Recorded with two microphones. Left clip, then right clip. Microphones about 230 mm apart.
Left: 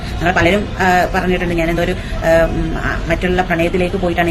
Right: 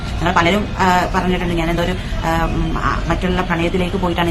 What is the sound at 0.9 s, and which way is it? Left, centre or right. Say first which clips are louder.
Speech: left 4 dB; right.